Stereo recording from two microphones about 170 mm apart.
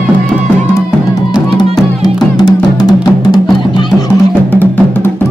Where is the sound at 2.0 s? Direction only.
20° left (ahead or behind).